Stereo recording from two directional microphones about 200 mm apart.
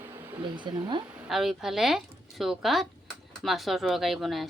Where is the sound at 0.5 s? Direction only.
25° right (ahead or behind).